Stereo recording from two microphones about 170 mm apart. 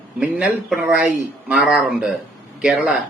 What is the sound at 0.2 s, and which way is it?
Speech, 5° right (ahead or behind).